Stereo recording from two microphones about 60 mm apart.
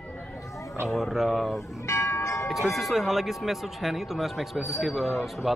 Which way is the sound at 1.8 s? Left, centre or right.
Left.